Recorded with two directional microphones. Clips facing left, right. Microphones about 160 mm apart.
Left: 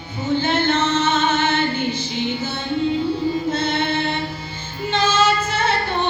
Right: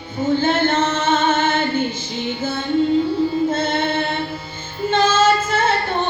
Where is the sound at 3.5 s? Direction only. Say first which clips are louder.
Right 1 dB; 50° right (ahead or behind).